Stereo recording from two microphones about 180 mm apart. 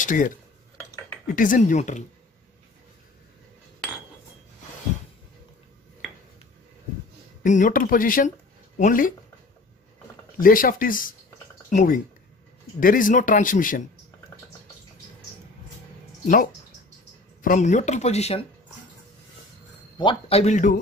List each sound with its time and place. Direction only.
0.0 s speech: 45° left (ahead or behind)
1.3 s speech: 50° left (ahead or behind)
7.4 s speech: 45° left (ahead or behind)
10.4 s speech: 50° left (ahead or behind)
17.4 s speech: 45° left (ahead or behind)
20.0 s speech: 30° left (ahead or behind)